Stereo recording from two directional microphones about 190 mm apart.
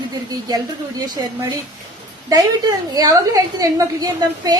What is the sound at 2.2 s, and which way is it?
A woman's voice, 20° right (ahead or behind).